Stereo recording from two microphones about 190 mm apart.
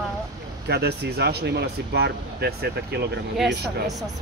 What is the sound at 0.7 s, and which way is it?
Speech, 60° right (ahead or behind).